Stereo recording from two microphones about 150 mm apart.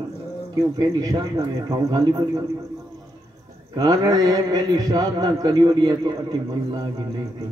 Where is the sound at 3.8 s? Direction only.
25° right (ahead or behind).